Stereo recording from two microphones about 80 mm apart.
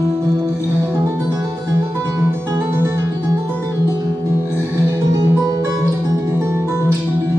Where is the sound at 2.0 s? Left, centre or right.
Right.